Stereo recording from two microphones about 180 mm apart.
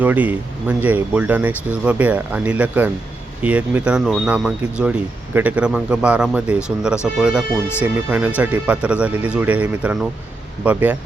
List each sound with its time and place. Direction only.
0.0 s speech: 10° right (ahead or behind)